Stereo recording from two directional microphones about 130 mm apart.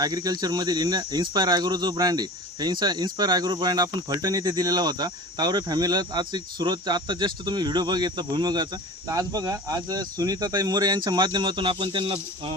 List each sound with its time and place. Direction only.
0.0 s speech: 30° right (ahead or behind)